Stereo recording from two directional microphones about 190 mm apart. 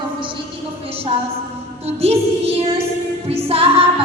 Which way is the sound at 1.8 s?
30° right (ahead or behind).